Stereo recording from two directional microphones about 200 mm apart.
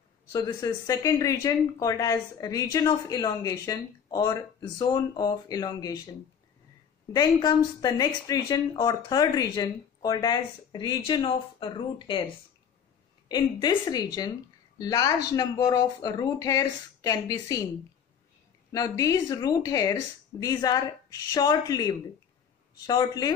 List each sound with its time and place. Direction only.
0.3 s speech: 20° left (ahead or behind)
7.1 s speech: 20° left (ahead or behind)
13.3 s speech: 20° left (ahead or behind)
18.7 s speech: 15° left (ahead or behind)